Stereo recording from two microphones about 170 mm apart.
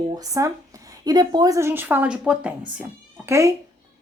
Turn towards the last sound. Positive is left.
turn(degrees=-20)  # may be behind; listen again after turning